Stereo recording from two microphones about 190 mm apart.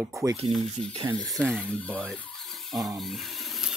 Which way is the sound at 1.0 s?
25° right (ahead or behind).